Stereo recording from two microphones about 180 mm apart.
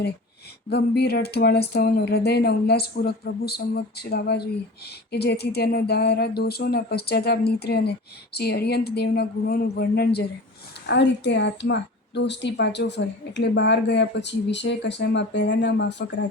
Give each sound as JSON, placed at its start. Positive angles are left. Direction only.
{"t": 0.7, "sound": "a woman's voice", "side_deg": 65}